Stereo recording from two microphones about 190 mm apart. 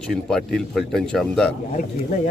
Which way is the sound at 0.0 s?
Centre (ahead or behind).